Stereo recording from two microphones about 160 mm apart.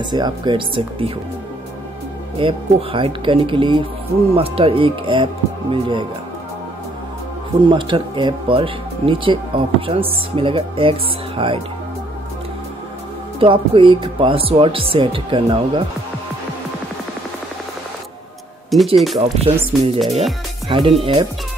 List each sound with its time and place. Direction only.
0.0 s speech: 30° right (ahead or behind)
2.3 s speech: 35° right (ahead or behind)
7.6 s speech: 30° right (ahead or behind)
13.4 s speech: 35° right (ahead or behind)
18.7 s speech: centre (ahead or behind)
19.4 s speech: 35° right (ahead or behind)